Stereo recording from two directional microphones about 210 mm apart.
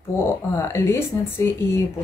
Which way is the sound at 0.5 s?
15° left (ahead or behind).